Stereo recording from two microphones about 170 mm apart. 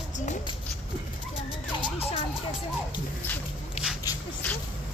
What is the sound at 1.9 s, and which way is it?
Emergency vehicle, 35° left (ahead or behind).